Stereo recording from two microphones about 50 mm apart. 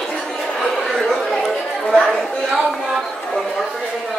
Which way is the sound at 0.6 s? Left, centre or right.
Centre.